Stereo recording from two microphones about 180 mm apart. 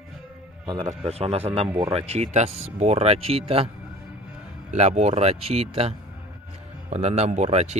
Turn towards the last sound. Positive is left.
turn(degrees=-35)  # may be behind; listen again after turning